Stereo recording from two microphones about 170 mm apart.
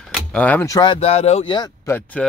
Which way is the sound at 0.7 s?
30° left (ahead or behind).